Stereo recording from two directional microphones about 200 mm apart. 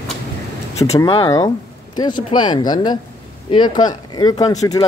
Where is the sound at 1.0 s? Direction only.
20° left (ahead or behind).